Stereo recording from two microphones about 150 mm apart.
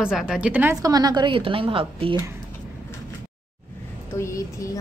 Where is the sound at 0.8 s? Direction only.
25° right (ahead or behind).